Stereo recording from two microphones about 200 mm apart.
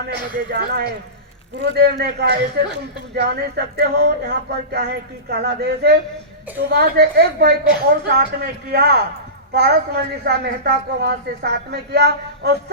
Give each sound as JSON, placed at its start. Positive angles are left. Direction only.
{"t": 0.7, "sound": "a woman's voice", "side_deg": -55}